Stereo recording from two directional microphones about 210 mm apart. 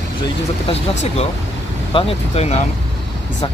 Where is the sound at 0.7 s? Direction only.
30° left (ahead or behind).